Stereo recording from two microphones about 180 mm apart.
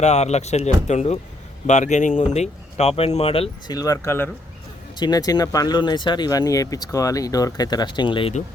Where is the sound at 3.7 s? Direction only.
20° left (ahead or behind).